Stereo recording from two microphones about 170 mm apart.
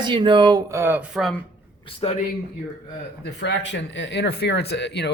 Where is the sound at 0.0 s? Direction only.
30° right (ahead or behind); by 1.4 s centre (ahead or behind).